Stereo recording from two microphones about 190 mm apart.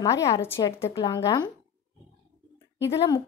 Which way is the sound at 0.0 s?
15° left (ahead or behind).